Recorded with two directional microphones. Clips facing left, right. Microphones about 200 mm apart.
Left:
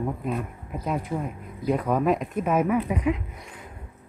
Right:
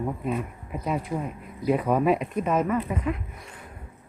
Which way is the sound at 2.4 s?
10° left (ahead or behind).